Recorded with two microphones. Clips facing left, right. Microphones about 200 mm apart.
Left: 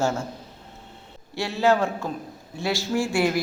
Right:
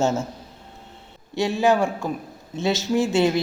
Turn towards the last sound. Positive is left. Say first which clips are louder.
# right 3 dB
turn(degrees=-20)  # may be behind; listen again after turning